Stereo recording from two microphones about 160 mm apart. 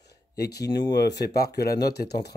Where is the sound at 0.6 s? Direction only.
25° left (ahead or behind).